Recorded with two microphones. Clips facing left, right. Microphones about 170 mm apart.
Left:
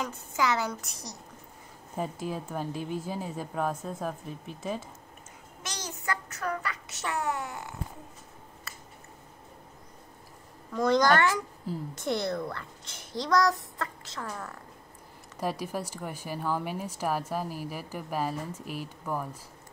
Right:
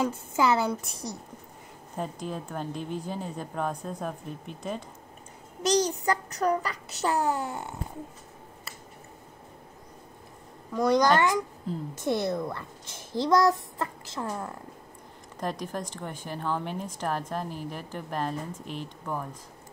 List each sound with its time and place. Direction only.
0.0 s a child's voice: 30° right (ahead or behind)
2.0 s a woman's voice: 5° left (ahead or behind)
5.6 s child singing: 35° right (ahead or behind)
10.7 s a child's voice: 10° right (ahead or behind)
11.7 s a woman's voice: 5° left (ahead or behind)
12.0 s a child's voice: 15° right (ahead or behind)
15.3 s a woman's voice: 5° left (ahead or behind)